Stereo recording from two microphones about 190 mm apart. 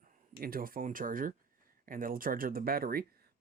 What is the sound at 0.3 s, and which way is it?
Speech, 50° right (ahead or behind).